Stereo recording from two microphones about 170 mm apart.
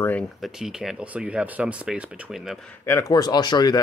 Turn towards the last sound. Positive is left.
turn(degrees=25)  # may be behind; listen again after turning